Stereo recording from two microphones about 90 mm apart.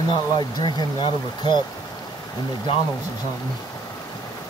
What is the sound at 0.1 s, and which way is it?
Speech, 55° left (ahead or behind).